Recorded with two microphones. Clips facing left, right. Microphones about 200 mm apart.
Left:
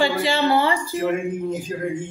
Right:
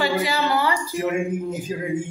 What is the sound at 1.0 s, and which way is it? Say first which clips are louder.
A man's voice: even; 5° right (ahead or behind).